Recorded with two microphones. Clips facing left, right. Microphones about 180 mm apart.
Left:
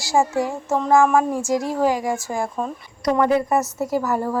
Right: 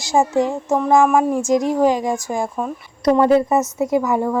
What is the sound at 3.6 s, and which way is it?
Speech, centre (ahead or behind).